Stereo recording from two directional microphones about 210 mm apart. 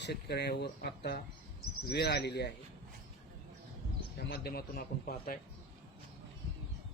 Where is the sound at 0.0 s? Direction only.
50° left (ahead or behind).